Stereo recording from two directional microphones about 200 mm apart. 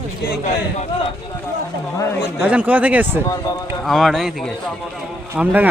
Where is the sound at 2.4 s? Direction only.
5° right (ahead or behind).